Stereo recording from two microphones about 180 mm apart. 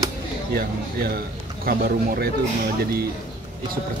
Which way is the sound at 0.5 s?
55° right (ahead or behind).